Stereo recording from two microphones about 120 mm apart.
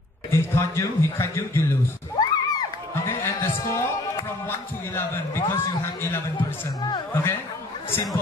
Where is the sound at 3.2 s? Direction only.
25° left (ahead or behind).